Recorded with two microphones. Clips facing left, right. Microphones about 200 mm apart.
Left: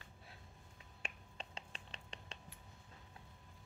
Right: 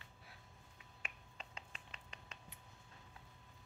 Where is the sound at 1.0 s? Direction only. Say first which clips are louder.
Left 4 dB; 30° left (ahead or behind).